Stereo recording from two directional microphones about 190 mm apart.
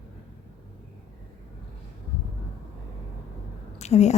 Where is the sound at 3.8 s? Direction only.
35° left (ahead or behind).